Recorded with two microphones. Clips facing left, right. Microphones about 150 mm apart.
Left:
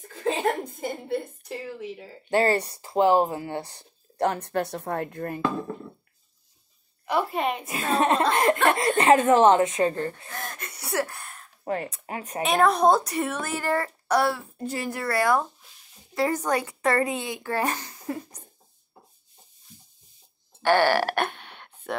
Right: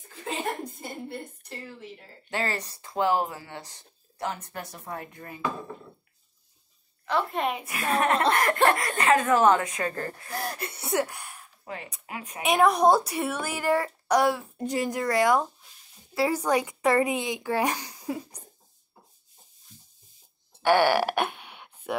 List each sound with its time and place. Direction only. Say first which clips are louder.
0.2 s chuckle: left 6 dB; 90° left
2.3 s speech: left 9 dB; 35° left (ahead or behind)
4.2 s speech: left 9 dB; 65° left (ahead or behind)
7.1 s a woman's voice: left 2 dB; 10° left (ahead or behind)
7.3 s a woman's voice: left 2 dB; centre (ahead or behind)
7.6 s speech: left 3 dB; 20° left (ahead or behind)
10.3 s speech: right 4 dB; 35° right (ahead or behind); by 11.5 s 10° right (ahead or behind)
11.6 s speech: left 10 dB; 45° left (ahead or behind)
12.4 s speech: even; 10° right (ahead or behind)
20.6 s a sound: even; 10° right (ahead or behind)